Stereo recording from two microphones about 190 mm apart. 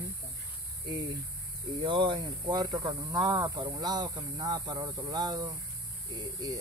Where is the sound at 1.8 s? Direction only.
25° right (ahead or behind).